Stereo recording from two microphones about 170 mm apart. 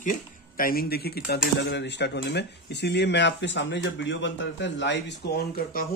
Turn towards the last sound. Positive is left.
turn(degrees=60)  # may be behind; listen again after turning